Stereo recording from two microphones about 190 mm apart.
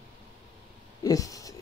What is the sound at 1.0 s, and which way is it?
Speech, 20° left (ahead or behind).